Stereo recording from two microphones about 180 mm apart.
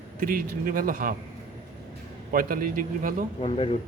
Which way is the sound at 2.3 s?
50° right (ahead or behind).